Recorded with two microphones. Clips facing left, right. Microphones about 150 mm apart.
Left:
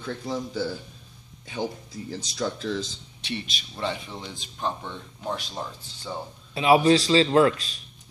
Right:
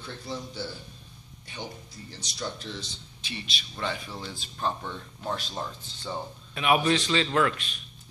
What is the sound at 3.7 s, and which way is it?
A man's voice, 25° left (ahead or behind).